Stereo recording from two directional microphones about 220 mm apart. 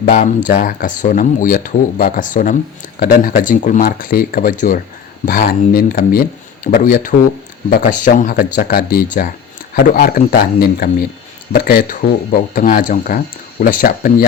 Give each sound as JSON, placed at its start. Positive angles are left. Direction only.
{"t": 0.0, "sound": "speech", "side_deg": 35}